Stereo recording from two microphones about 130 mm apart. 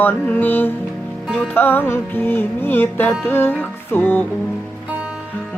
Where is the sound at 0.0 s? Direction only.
15° left (ahead or behind).